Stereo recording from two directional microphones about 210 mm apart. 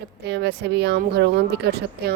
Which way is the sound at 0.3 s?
55° right (ahead or behind).